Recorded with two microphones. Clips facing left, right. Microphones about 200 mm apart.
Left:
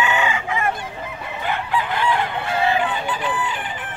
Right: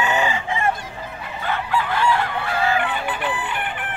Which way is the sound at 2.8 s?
60° right (ahead or behind).